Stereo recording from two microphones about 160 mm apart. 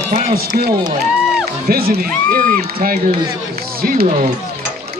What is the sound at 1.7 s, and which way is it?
A man's voice, 70° right (ahead or behind).